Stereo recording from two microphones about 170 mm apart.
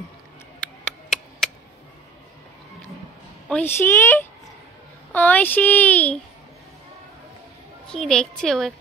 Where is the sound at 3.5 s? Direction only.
15° left (ahead or behind).